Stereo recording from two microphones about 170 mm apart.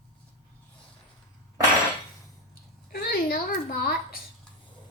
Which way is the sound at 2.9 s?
60° left (ahead or behind).